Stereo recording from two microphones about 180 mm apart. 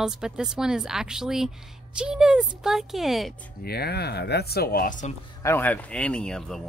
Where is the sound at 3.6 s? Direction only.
60° left (ahead or behind); by 5.1 s 45° left (ahead or behind).